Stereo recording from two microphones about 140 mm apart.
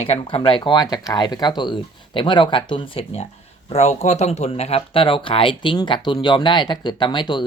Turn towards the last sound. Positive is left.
turn(degrees=35)  # may be behind; listen again after turning